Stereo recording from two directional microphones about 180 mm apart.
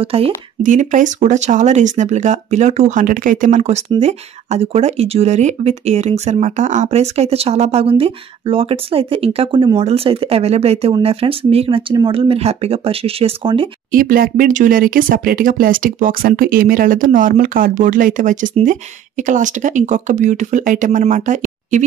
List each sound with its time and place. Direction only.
0.0 s speech: 35° right (ahead or behind)
13.9 s speech: 50° right (ahead or behind)